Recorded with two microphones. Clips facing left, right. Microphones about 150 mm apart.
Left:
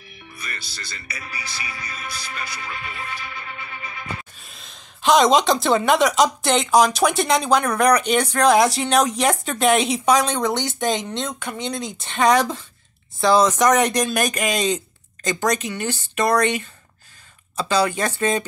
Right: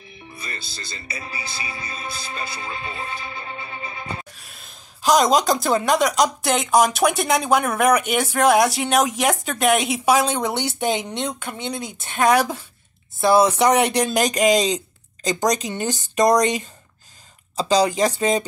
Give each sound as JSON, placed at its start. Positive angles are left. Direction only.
{"t": 0.2, "sound": "speech", "side_deg": -25}
{"t": 4.4, "sound": "speech", "side_deg": -5}
{"t": 17.7, "sound": "speech", "side_deg": -15}